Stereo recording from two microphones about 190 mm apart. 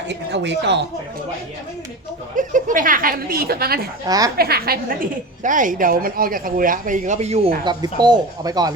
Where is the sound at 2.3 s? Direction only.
45° right (ahead or behind).